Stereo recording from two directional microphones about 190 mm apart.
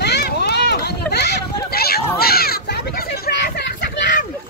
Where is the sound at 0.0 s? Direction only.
60° left (ahead or behind).